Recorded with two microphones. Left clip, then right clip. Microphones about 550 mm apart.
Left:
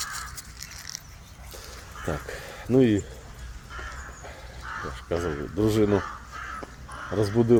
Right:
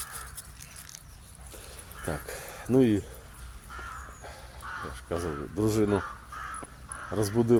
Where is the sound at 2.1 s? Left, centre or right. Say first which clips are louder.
Left 3 dB; right.